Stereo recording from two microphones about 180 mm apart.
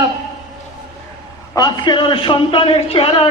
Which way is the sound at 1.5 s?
25° left (ahead or behind).